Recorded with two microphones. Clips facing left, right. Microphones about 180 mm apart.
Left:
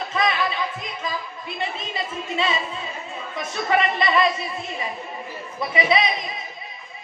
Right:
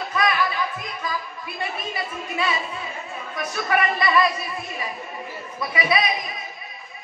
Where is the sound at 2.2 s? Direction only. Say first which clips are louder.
Left 1 dB; 25° left (ahead or behind).